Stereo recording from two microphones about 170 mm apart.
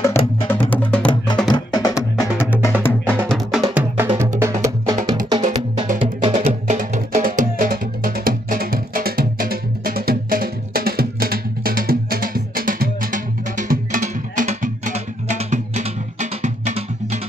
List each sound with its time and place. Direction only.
0.0 s music: 15° left (ahead or behind)
1.5 s music: 25° left (ahead or behind)
3.3 s music: centre (ahead or behind)
3.7 s music: 10° right (ahead or behind)
5.4 s music: 45° right (ahead or behind)